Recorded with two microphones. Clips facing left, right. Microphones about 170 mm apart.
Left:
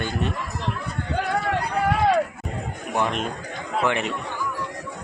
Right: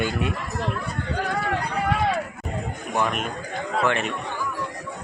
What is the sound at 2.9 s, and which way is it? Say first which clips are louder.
A man's voice: left 1 dB; 20° left (ahead or behind).